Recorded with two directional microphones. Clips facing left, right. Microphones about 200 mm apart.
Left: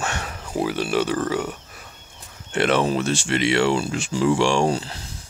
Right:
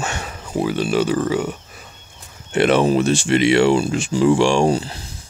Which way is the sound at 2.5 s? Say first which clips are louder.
Right 5 dB; 15° right (ahead or behind).